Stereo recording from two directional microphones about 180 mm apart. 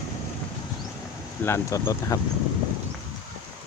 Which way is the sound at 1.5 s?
15° left (ahead or behind).